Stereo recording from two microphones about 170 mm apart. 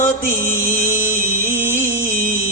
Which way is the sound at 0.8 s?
15° right (ahead or behind).